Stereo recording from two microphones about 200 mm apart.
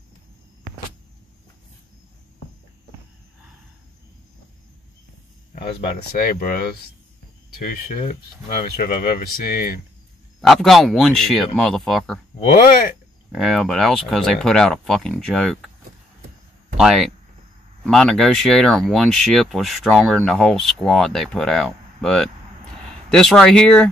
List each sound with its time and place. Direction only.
5.5 s a sound: 30° left (ahead or behind)
5.9 s speech: 45° left (ahead or behind)
10.4 s speech: centre (ahead or behind)
12.5 s speech: 45° left (ahead or behind)
13.3 s speech: centre (ahead or behind)
16.7 s speech: centre (ahead or behind)